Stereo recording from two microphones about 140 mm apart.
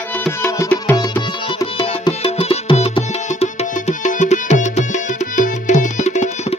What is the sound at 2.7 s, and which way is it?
Music, 50° left (ahead or behind).